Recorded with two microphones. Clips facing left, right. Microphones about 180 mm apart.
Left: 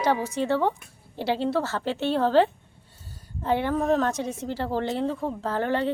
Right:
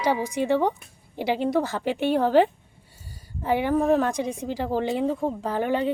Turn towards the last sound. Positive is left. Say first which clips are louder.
# right 1 dB
turn(degrees=-15)  # may be behind; listen again after turning